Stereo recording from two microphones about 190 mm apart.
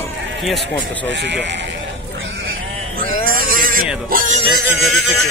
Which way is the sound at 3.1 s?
50° right (ahead or behind).